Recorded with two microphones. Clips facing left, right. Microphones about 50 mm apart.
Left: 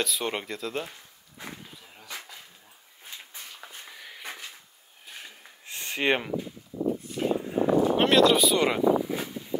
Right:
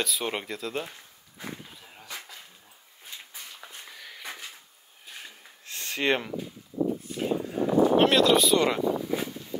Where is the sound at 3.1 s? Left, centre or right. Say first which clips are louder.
Even; centre.